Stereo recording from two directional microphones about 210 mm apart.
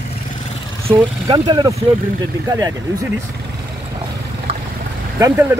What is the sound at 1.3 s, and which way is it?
Speech, 20° right (ahead or behind).